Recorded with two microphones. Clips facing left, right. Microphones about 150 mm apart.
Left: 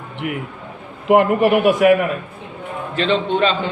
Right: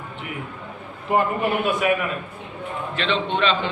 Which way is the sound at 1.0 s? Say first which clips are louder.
Left 8 dB; 80° left.